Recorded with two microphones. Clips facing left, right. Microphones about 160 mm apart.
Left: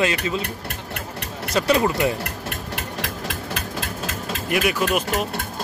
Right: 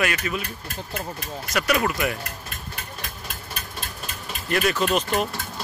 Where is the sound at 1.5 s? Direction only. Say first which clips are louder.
Left 4 dB; 25° left (ahead or behind).